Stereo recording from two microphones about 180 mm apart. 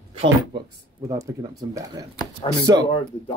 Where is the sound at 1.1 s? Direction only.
20° right (ahead or behind).